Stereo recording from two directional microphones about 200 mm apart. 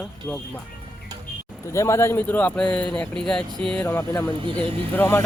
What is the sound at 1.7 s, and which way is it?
Speech, 15° left (ahead or behind).